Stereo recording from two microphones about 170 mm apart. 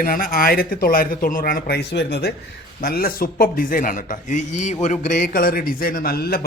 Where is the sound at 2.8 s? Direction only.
60° left (ahead or behind); by 5.2 s 45° left (ahead or behind).